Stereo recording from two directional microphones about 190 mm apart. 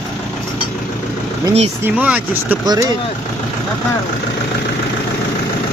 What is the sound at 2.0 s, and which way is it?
Speech, 5° right (ahead or behind).